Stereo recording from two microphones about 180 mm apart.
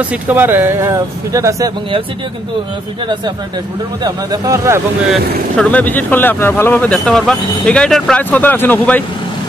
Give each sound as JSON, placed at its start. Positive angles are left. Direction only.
{"t": 0.0, "sound": "speech", "side_deg": -10}
{"t": 4.0, "sound": "speech", "side_deg": -20}
{"t": 5.6, "sound": "speech", "side_deg": 10}